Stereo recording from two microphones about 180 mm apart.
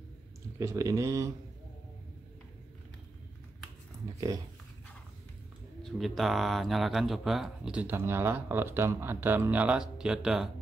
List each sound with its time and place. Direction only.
0.6 s speech: 20° right (ahead or behind)
5.8 s speech: centre (ahead or behind)